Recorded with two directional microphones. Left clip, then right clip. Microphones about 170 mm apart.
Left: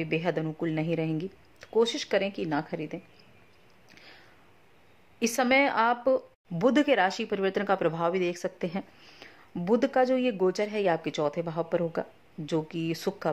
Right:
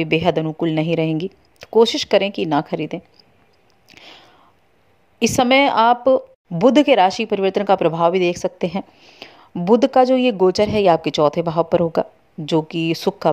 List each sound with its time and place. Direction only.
0.0 s speech: 40° right (ahead or behind)
3.9 s a sound: 40° right (ahead or behind)
5.2 s speech: 35° right (ahead or behind)